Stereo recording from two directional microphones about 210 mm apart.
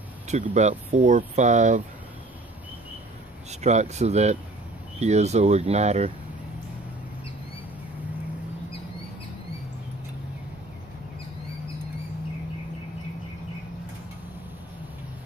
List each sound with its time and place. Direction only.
0.3 s speech: 35° right (ahead or behind)
3.6 s speech: 35° right (ahead or behind)